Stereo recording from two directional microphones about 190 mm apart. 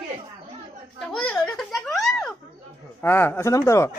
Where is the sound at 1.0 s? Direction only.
5° left (ahead or behind).